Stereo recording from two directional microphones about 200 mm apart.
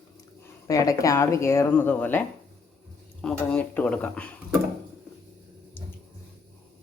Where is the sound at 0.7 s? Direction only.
15° left (ahead or behind).